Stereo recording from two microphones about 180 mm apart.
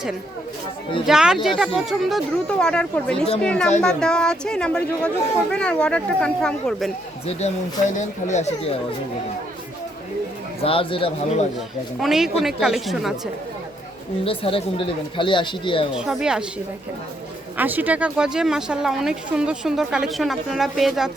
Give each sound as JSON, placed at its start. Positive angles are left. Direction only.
{"t": 1.0, "sound": "speech", "side_deg": -5}
{"t": 7.3, "sound": "speech", "side_deg": 35}
{"t": 10.6, "sound": "speech", "side_deg": 30}
{"t": 11.9, "sound": "speech", "side_deg": 0}
{"t": 14.3, "sound": "speech", "side_deg": 30}
{"t": 16.0, "sound": "speech", "side_deg": -5}
{"t": 17.6, "sound": "speech", "side_deg": -10}